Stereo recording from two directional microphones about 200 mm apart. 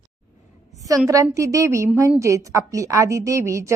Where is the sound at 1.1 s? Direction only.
15° right (ahead or behind).